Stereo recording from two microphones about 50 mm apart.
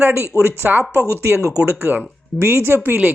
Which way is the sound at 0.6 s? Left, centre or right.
Right.